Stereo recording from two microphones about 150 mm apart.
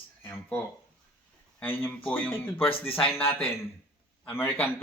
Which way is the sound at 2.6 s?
35° left (ahead or behind).